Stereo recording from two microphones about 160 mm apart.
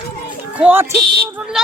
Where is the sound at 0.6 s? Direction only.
10° right (ahead or behind).